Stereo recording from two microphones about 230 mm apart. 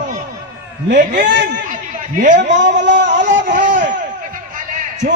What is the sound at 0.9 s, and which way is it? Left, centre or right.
Speech, right.